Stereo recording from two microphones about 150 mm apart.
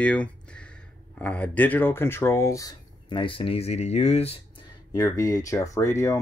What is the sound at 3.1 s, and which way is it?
Speech, 35° left (ahead or behind).